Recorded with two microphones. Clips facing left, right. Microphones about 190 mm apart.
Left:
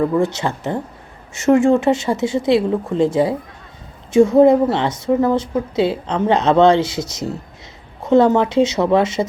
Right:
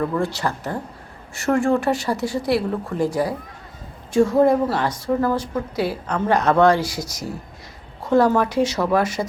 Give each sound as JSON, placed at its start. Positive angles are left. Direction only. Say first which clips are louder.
{"t": 0.0, "sound": "a woman's voice", "louder": "left 5 dB", "side_deg": 20}